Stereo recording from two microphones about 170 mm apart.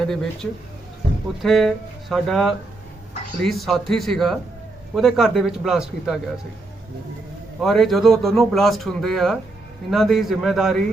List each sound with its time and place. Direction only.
0.0 s speech: 5° left (ahead or behind)
1.4 s speech: centre (ahead or behind)
7.6 s speech: centre (ahead or behind)